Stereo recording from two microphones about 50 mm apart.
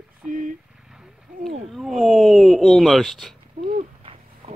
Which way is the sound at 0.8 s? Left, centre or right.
Centre.